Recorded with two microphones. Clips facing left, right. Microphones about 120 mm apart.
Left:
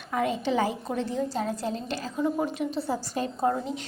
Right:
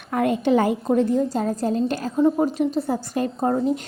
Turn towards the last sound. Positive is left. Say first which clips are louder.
# right 6 dB
turn(degrees=-45)  # may be behind; listen again after turning